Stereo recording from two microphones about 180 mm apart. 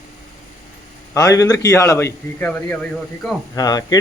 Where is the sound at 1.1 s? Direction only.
20° left (ahead or behind).